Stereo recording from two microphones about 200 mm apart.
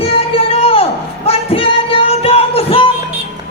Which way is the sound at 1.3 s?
30° left (ahead or behind).